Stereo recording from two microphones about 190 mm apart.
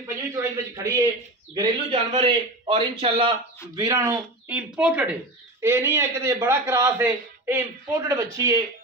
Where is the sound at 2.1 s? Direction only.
30° right (ahead or behind).